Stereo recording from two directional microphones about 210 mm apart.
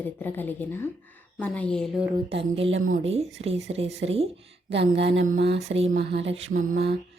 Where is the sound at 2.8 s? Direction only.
35° right (ahead or behind).